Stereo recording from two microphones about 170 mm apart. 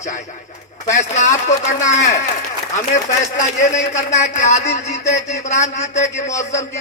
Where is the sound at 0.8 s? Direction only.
45° left (ahead or behind).